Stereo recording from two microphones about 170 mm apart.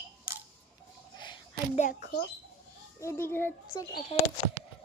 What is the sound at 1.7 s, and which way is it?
Speech, 45° left (ahead or behind).